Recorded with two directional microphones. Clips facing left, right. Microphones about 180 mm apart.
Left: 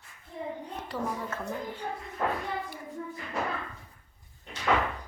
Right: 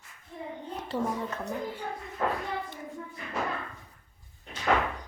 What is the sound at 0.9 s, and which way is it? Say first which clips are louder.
Speech: right 3 dB; 30° right (ahead or behind).